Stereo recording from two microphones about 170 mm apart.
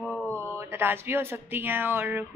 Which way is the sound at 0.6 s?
15° right (ahead or behind).